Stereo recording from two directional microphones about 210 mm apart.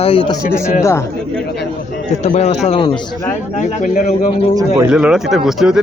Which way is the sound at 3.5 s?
40° left (ahead or behind).